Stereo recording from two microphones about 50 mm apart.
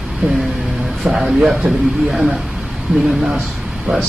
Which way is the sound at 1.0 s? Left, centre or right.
Centre.